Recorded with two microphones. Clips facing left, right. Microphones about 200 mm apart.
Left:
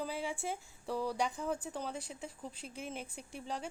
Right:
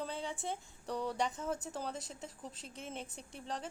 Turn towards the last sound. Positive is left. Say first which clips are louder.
# left 1 dB
turn(degrees=0)  # may be behind; listen again after turning